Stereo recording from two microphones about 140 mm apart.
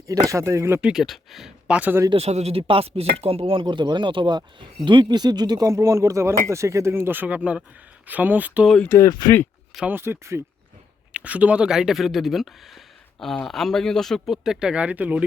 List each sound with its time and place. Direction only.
0.1 s speech: 25° right (ahead or behind)
0.8 s speech: 5° right (ahead or behind)
2.0 s chopping: 45° right (ahead or behind)
4.9 s speech: 30° right (ahead or behind); by 8.6 s 10° right (ahead or behind)
8.6 s speech: 5° left (ahead or behind)
8.9 s speech: 25° left (ahead or behind)
9.7 s speech: 15° right (ahead or behind)